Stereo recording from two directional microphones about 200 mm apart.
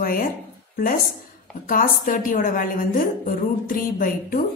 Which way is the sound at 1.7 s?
45° left (ahead or behind).